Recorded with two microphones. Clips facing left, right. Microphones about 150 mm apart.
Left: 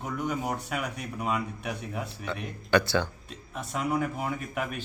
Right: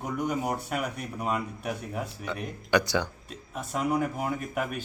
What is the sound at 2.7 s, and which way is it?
Speech, 15° right (ahead or behind).